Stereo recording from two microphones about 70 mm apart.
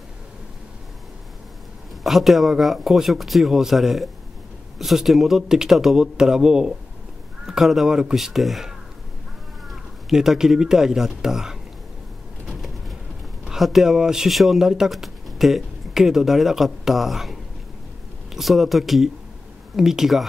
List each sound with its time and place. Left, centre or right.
2.0 s speech: centre
13.4 s speech: centre